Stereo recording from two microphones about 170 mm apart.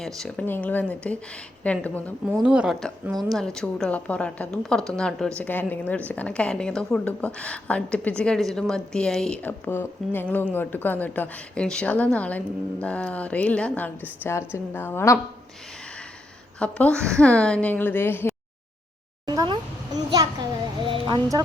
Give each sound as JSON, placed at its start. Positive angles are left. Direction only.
{"t": 0.2, "sound": "a woman's voice", "side_deg": 0}
{"t": 2.4, "sound": "a woman's voice", "side_deg": -5}
{"t": 16.6, "sound": "a woman's voice", "side_deg": 5}
{"t": 19.2, "sound": "a sound", "side_deg": -25}
{"t": 20.2, "sound": "children playing", "side_deg": -20}
{"t": 20.8, "sound": "music", "side_deg": -25}